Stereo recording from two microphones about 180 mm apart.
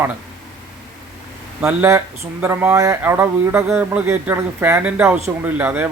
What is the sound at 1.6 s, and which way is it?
Speech, 10° right (ahead or behind).